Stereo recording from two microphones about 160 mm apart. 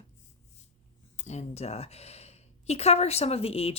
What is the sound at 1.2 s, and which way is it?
A woman's voice, 45° left (ahead or behind).